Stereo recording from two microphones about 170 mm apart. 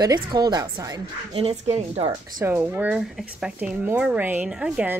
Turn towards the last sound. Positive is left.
turn(degrees=-5)  # may be behind; listen again after turning